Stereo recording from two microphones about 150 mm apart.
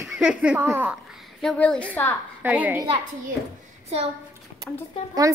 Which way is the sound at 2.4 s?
10° right (ahead or behind).